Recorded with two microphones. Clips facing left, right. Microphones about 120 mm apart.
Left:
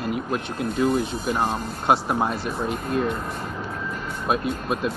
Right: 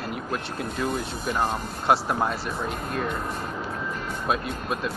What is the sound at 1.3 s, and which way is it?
Speech, 20° left (ahead or behind).